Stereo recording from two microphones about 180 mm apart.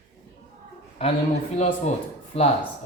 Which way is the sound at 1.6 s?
40° left (ahead or behind).